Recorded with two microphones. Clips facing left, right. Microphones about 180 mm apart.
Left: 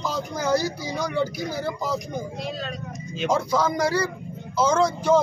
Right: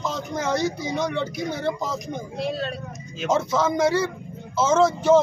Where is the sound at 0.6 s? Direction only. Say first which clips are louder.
Right 3 dB; 20° right (ahead or behind).